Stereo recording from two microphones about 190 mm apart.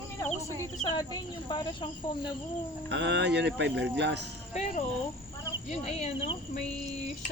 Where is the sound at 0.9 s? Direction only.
20° left (ahead or behind).